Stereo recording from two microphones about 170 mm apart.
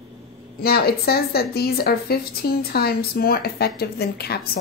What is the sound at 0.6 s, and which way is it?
Speech, 65° left (ahead or behind).